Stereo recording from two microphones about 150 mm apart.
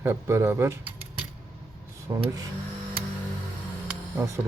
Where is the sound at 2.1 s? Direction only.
25° right (ahead or behind).